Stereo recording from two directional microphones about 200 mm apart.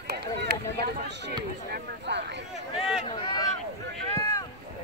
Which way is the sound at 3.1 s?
25° left (ahead or behind).